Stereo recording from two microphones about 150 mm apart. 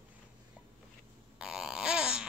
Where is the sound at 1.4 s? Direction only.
5° right (ahead or behind).